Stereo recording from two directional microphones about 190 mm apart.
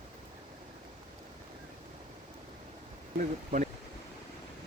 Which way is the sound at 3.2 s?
45° right (ahead or behind).